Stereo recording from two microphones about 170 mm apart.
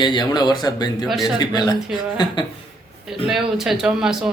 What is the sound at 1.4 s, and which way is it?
Speech, 25° left (ahead or behind).